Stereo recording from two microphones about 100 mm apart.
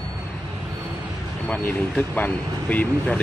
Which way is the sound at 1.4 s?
15° left (ahead or behind).